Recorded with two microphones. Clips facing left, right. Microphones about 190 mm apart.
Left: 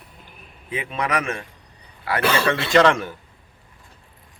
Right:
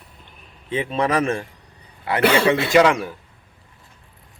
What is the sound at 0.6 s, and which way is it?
A man's voice, 30° right (ahead or behind).